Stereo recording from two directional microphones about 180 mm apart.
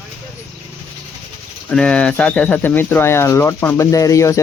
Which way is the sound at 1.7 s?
5° left (ahead or behind).